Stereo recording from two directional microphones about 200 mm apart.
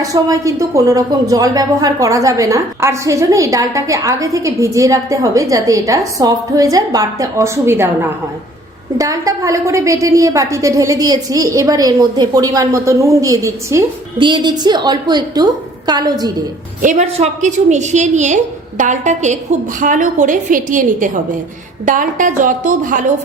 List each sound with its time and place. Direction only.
0.0 s a woman's voice: 15° right (ahead or behind)
16.8 s a woman's voice: 35° right (ahead or behind)